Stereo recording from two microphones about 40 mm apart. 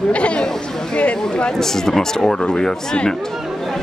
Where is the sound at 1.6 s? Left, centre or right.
Centre.